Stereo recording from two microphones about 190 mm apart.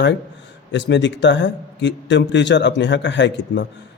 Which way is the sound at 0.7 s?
65° left (ahead or behind).